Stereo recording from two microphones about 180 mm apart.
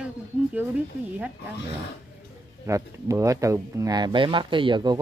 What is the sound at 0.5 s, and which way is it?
Speech, 10° right (ahead or behind).